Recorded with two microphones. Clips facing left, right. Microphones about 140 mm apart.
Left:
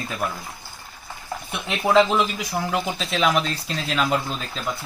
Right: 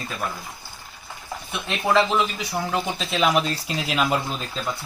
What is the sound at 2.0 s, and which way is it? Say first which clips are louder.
Speech: left 4 dB; 15° left (ahead or behind).